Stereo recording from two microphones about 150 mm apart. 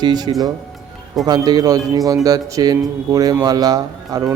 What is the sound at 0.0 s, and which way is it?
Speech, 25° right (ahead or behind).